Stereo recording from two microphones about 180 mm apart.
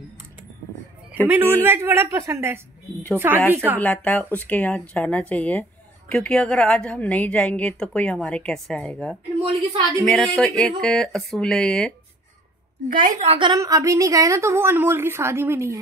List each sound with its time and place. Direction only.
1.1 s a woman's voice: 10° right (ahead or behind)
3.8 s a woman's voice: 10° left (ahead or behind)
9.4 s a woman's voice: 35° right (ahead or behind)
10.0 s speech: 5° left (ahead or behind)
12.8 s a woman's voice: 45° right (ahead or behind)
13.5 s a woman's voice: 20° right (ahead or behind)